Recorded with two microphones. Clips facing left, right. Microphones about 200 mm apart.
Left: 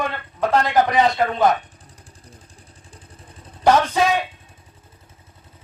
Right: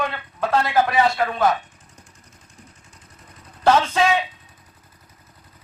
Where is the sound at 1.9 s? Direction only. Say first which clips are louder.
Left 4 dB; 30° left (ahead or behind).